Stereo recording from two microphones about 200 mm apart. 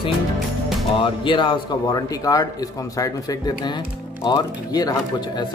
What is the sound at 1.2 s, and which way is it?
Speech, 25° left (ahead or behind).